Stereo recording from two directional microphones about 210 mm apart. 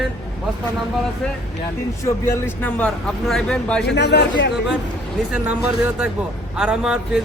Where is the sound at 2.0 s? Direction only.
10° left (ahead or behind).